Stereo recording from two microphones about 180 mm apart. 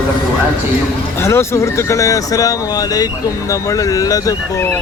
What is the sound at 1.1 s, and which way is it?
Speech, 15° left (ahead or behind).